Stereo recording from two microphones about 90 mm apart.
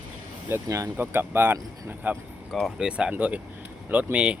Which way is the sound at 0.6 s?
35° right (ahead or behind).